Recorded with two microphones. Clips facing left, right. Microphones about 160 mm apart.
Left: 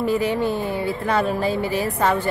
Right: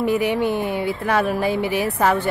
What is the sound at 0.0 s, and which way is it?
Speech, 15° right (ahead or behind).